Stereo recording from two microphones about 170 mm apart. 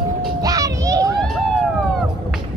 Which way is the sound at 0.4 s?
20° right (ahead or behind).